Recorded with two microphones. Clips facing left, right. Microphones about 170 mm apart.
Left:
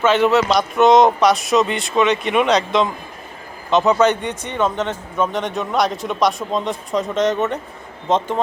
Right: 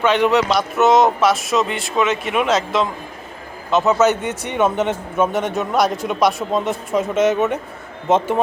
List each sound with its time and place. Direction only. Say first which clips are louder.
0.0 s speech: left 1 dB; 15° right (ahead or behind)